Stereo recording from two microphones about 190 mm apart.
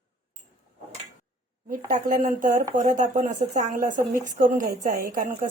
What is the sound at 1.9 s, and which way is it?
Speech, 45° right (ahead or behind).